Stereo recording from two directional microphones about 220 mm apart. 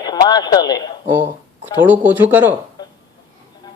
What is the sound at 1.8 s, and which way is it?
Speech, 10° right (ahead or behind).